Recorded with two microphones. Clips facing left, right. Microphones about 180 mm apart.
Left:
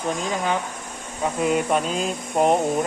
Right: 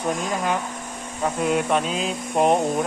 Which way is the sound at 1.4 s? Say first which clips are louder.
Left 1 dB; centre (ahead or behind).